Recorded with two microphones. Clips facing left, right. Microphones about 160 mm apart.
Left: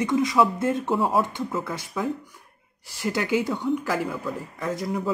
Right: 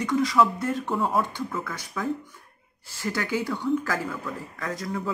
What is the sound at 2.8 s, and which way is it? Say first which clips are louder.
Speech: left 3 dB; 15° left (ahead or behind).